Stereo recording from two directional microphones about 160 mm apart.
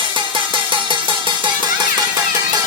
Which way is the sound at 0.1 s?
30° right (ahead or behind).